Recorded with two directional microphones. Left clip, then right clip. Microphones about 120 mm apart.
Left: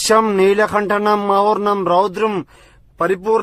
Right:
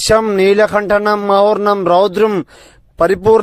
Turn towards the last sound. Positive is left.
turn(degrees=-55)  # may be behind; listen again after turning